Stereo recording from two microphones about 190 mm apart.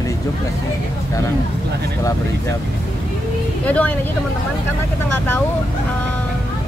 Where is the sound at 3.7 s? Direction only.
10° left (ahead or behind).